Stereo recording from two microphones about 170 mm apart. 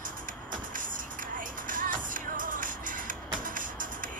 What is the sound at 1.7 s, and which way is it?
Music, 50° right (ahead or behind).